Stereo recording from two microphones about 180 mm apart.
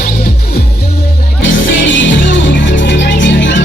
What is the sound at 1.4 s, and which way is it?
Music, 90° left.